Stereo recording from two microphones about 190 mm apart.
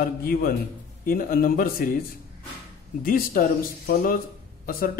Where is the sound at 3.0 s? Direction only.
50° left (ahead or behind).